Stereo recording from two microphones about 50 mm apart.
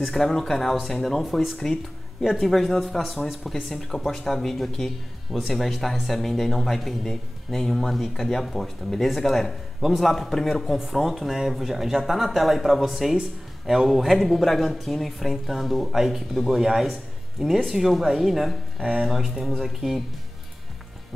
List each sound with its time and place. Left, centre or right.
0.0 s speech: centre